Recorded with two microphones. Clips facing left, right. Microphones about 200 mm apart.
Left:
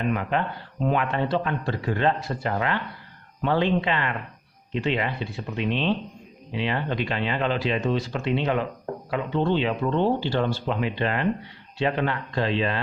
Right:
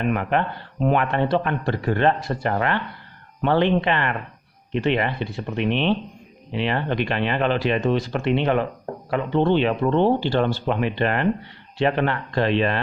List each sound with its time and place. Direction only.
0.1 s speech: 60° right (ahead or behind)